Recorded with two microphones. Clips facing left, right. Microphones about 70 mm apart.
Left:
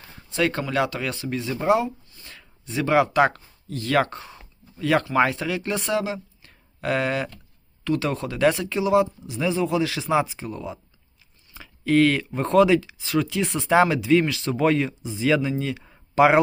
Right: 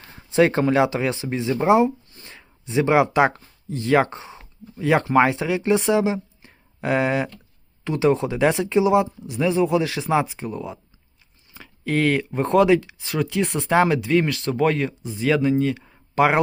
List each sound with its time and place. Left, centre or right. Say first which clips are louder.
0.3 s speech: right 7 dB; right; by 16.4 s centre